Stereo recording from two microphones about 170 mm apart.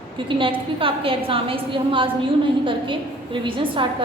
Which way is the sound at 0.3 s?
30° right (ahead or behind).